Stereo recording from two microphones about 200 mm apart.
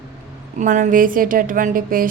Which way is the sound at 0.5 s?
40° right (ahead or behind).